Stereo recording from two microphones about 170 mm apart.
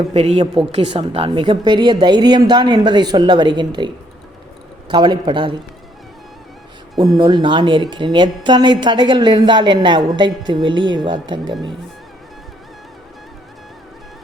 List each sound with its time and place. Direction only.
0.1 s a woman's voice: 35° right (ahead or behind)
7.2 s a woman's voice: 25° right (ahead or behind)